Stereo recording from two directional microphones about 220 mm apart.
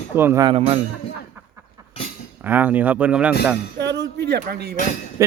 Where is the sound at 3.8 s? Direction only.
50° right (ahead or behind).